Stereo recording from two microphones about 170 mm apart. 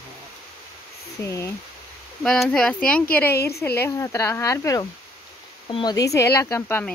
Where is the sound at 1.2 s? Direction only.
15° left (ahead or behind).